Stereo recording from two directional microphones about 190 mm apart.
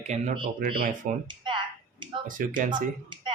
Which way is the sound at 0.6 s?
50° right (ahead or behind).